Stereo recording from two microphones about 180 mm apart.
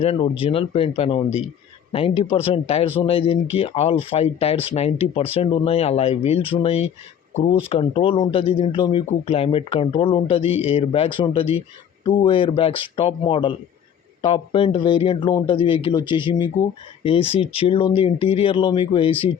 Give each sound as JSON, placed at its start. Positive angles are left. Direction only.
{"t": 0.0, "sound": "a man's voice", "side_deg": 30}